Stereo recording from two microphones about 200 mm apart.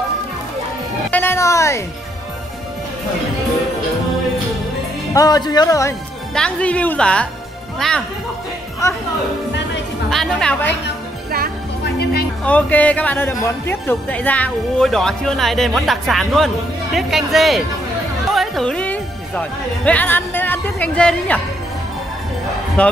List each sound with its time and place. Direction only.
1.1 s music: 10° left (ahead or behind)
5.1 s speech: 20° left (ahead or behind)
6.3 s speech: 5° left (ahead or behind)
10.0 s speech: 5° left (ahead or behind)
11.8 s music: 55° left (ahead or behind)
12.4 s speech: 5° left (ahead or behind)
22.8 s speech: 5° left (ahead or behind)